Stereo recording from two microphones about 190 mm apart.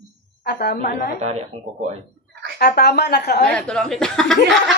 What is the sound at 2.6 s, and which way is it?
Speech, 55° left (ahead or behind).